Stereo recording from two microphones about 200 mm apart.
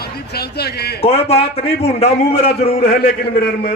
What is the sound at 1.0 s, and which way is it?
A man's voice, 30° left (ahead or behind).